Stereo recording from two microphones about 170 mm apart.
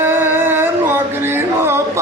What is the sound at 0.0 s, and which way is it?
Music, 15° right (ahead or behind).